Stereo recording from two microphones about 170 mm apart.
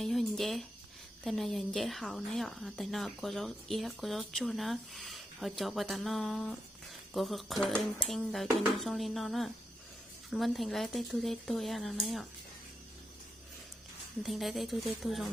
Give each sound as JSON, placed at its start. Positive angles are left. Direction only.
{"t": 0.0, "sound": "speech", "side_deg": 0}
{"t": 14.3, "sound": "speech", "side_deg": 0}